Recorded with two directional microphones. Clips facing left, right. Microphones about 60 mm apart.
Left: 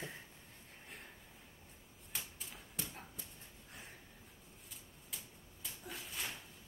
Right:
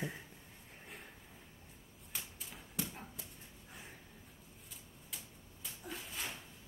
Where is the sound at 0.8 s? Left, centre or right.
Centre.